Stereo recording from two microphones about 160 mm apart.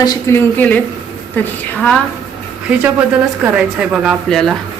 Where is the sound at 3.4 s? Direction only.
5° right (ahead or behind).